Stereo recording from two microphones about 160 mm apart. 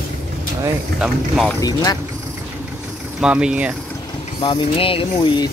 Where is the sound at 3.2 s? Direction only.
5° right (ahead or behind).